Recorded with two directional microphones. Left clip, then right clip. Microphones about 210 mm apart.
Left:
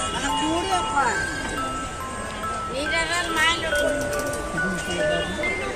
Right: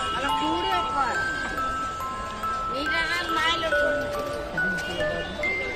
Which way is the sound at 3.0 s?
45° right (ahead or behind).